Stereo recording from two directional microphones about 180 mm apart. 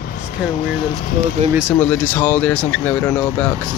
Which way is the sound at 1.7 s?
10° left (ahead or behind).